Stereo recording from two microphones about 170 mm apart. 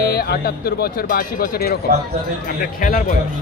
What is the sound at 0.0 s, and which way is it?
Speech, 70° left (ahead or behind).